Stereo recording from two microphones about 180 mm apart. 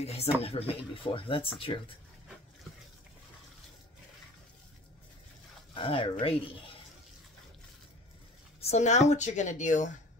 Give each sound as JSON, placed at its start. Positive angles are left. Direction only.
{"t": 0.0, "sound": "a woman's voice", "side_deg": 35}
{"t": 5.8, "sound": "a woman's voice", "side_deg": 30}
{"t": 8.5, "sound": "a woman's voice", "side_deg": 35}